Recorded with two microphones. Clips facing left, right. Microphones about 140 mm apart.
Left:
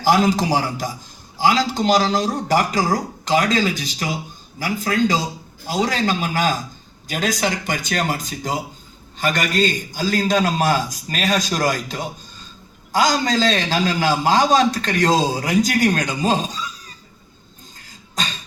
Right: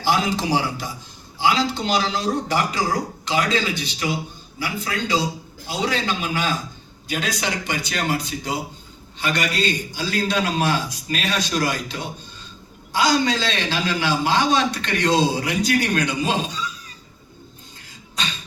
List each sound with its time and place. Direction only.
0.0 s a man's voice: 40° left (ahead or behind)
18.2 s beatboxing: 40° left (ahead or behind)